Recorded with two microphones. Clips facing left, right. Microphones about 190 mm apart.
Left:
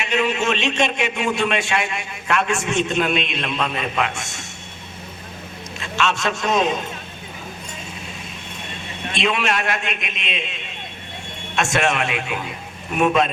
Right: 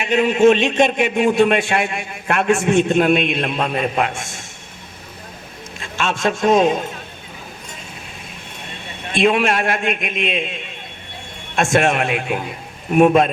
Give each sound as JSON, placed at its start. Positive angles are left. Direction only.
{"t": 0.0, "sound": "a man's voice", "side_deg": -50}
{"t": 5.8, "sound": "a man's voice", "side_deg": -50}
{"t": 9.1, "sound": "a man's voice", "side_deg": -55}